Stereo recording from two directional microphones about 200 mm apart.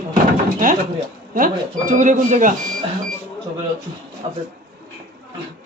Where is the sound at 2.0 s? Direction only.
40° right (ahead or behind).